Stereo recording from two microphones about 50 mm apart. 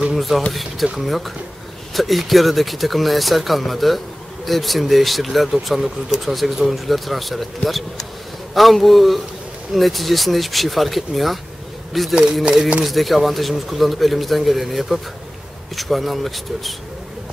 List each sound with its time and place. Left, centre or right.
0.1 s a man's voice: centre